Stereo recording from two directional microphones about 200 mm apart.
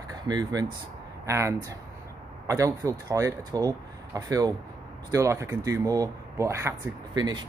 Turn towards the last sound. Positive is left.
turn(degrees=-20)  # may be behind; listen again after turning